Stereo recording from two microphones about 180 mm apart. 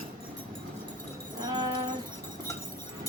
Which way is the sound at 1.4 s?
20° right (ahead or behind).